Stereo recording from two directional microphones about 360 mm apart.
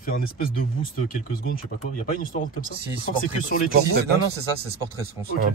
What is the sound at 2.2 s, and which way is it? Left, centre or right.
Speech, left.